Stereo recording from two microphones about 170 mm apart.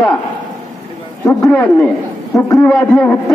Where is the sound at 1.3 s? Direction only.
15° left (ahead or behind).